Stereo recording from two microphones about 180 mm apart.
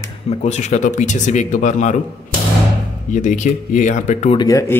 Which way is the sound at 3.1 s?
45° left (ahead or behind).